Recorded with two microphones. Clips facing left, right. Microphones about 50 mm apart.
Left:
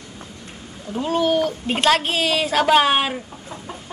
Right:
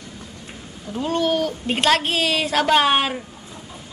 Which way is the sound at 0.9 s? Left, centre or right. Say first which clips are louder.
Left 2 dB; centre.